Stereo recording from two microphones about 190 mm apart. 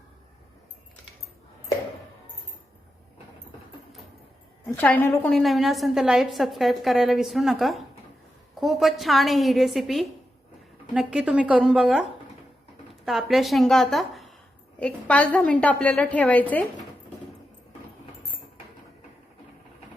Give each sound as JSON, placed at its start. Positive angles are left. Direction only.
{"t": 4.6, "sound": "a woman's voice", "side_deg": 10}